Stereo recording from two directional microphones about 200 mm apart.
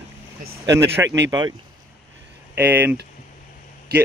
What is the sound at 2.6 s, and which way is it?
Speech, 10° right (ahead or behind).